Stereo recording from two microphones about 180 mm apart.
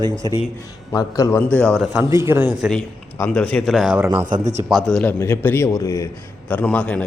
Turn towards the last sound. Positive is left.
turn(degrees=5)  # may be behind; listen again after turning